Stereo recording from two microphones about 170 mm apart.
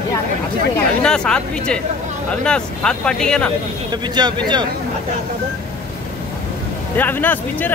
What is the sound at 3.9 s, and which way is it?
Speech, 25° right (ahead or behind).